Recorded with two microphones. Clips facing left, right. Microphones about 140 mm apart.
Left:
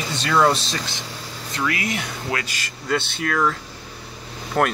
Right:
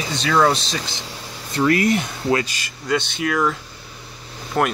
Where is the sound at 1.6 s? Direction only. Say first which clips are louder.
Right 8 dB; 35° right (ahead or behind).